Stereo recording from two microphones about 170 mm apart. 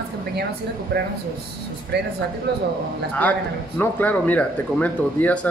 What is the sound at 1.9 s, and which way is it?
Speech, 80° right.